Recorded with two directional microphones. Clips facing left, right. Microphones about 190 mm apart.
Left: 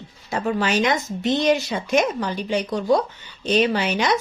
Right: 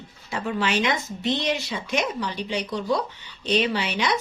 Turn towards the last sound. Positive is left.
turn(degrees=45)  # may be behind; listen again after turning